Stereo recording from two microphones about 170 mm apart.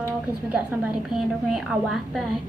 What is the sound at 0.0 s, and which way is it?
A woman's voice, 10° right (ahead or behind).